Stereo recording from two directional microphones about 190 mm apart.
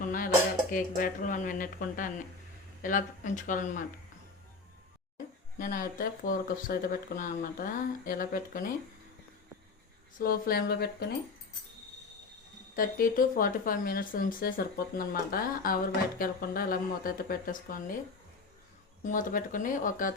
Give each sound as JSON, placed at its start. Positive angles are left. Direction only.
{"t": 0.0, "sound": "music", "side_deg": 45}
{"t": 0.7, "sound": "speech", "side_deg": 45}
{"t": 5.1, "sound": "speech", "side_deg": 45}
{"t": 10.2, "sound": "speech", "side_deg": 50}
{"t": 12.7, "sound": "speech", "side_deg": 45}
{"t": 19.0, "sound": "speech", "side_deg": 45}